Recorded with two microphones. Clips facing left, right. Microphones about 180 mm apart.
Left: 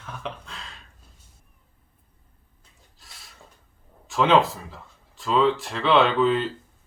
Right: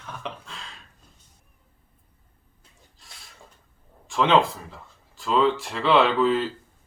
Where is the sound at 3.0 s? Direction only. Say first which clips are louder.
Even; centre (ahead or behind).